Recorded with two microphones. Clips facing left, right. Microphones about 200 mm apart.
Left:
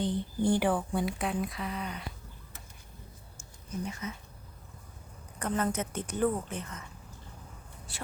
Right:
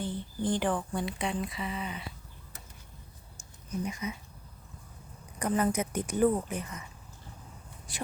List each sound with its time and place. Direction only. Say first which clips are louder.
0.0 s speech: left 4 dB; 15° left (ahead or behind); by 2.0 s centre (ahead or behind)
3.8 s a woman's voice: right 3 dB; 15° right (ahead or behind)
5.4 s a woman's voice: right 3 dB; 10° right (ahead or behind)
7.9 s a woman's voice: right 4 dB; 15° right (ahead or behind)